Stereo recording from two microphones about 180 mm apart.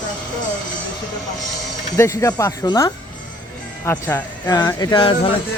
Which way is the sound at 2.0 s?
15° left (ahead or behind).